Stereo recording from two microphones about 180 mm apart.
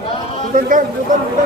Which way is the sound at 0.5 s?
50° right (ahead or behind).